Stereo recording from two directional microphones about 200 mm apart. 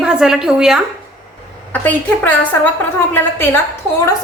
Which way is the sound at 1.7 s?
10° left (ahead or behind).